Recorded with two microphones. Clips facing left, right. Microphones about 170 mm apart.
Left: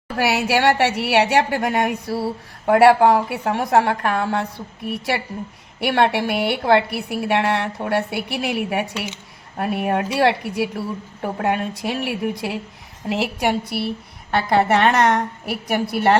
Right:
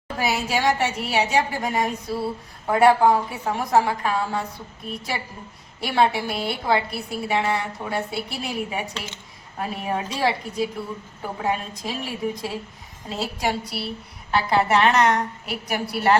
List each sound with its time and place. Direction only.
0.2 s a woman's voice: 70° left (ahead or behind)